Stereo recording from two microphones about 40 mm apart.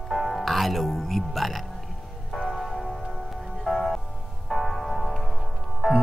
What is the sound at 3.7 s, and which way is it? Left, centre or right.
Music, centre.